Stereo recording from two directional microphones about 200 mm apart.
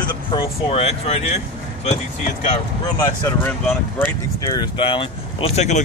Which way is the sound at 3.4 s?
10° left (ahead or behind).